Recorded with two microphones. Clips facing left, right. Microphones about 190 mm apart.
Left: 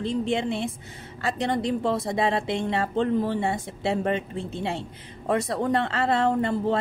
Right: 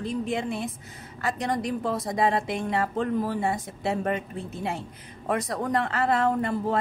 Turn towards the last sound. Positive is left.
turn(degrees=25)  # may be behind; listen again after turning